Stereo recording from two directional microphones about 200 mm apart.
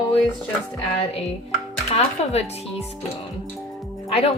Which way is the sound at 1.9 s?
30° left (ahead or behind).